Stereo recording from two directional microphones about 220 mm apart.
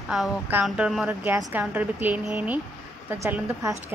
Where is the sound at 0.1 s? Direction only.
5° right (ahead or behind).